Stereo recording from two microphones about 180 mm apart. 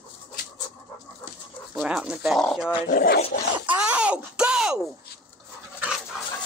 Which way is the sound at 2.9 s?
60° left (ahead or behind).